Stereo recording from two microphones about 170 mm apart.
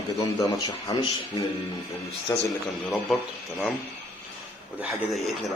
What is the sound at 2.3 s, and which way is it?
Speech, 15° left (ahead or behind).